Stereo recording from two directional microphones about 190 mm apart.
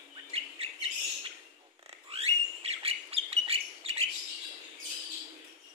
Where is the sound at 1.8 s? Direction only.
30° right (ahead or behind).